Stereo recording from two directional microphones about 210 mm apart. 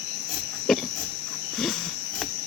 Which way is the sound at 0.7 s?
Centre (ahead or behind).